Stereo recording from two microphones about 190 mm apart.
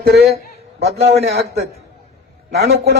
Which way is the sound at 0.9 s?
35° right (ahead or behind).